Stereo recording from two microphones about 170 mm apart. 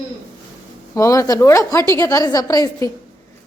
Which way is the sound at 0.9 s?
20° left (ahead or behind).